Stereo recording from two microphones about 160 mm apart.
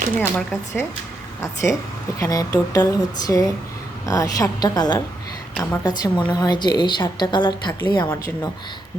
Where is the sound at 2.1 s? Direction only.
20° left (ahead or behind).